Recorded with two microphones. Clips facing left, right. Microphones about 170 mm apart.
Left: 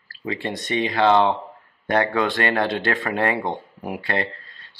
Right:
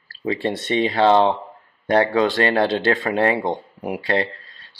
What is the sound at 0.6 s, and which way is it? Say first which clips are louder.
Speech: right 2 dB; 25° right (ahead or behind).